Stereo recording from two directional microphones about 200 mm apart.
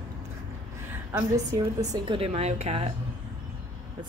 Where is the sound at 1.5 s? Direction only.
20° right (ahead or behind).